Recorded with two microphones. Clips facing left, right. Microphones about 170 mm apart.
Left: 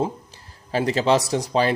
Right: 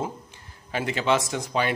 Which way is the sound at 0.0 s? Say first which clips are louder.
Left 6 dB; 35° left (ahead or behind).